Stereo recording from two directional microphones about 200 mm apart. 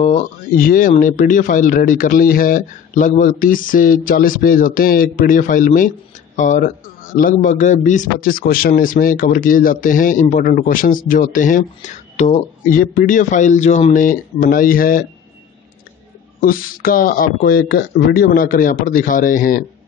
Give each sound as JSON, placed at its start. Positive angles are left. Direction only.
{"t": 0.0, "sound": "speech", "side_deg": 40}
{"t": 16.3, "sound": "speech", "side_deg": 45}